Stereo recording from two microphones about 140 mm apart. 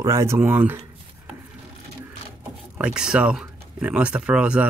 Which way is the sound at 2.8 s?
5° right (ahead or behind).